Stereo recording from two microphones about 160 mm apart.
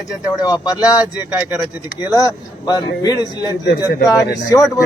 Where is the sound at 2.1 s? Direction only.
25° left (ahead or behind).